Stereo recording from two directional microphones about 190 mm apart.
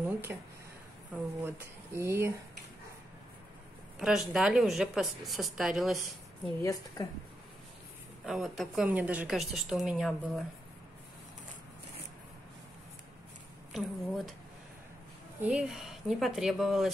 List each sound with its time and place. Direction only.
0.0 s a sound: 10° right (ahead or behind)
1.4 s speech: 10° right (ahead or behind)
4.0 s a woman's voice: centre (ahead or behind)
6.6 s a woman's voice: 20° left (ahead or behind)
8.3 s a woman's voice: centre (ahead or behind)
13.7 s a woman's voice: centre (ahead or behind)
15.4 s a woman's voice: 5° right (ahead or behind)